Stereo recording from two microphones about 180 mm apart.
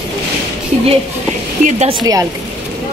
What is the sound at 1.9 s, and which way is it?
Speech, 25° right (ahead or behind).